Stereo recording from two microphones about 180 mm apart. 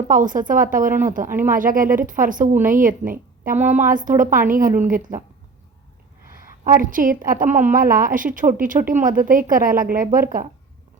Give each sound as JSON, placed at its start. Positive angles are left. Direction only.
{"t": 0.1, "sound": "a woman's voice", "side_deg": -45}
{"t": 6.7, "sound": "a woman's voice", "side_deg": -50}